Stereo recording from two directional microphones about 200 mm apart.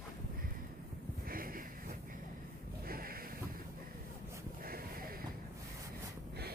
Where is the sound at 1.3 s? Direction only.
45° right (ahead or behind).